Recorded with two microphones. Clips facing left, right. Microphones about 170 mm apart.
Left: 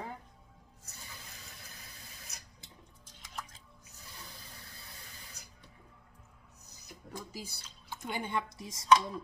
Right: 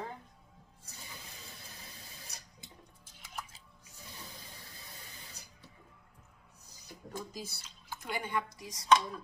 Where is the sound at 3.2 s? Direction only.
5° right (ahead or behind).